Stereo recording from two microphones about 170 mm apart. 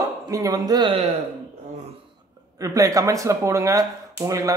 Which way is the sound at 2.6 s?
20° right (ahead or behind).